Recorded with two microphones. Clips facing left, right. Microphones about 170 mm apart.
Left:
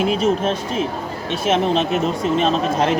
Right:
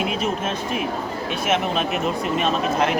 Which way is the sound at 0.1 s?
30° left (ahead or behind).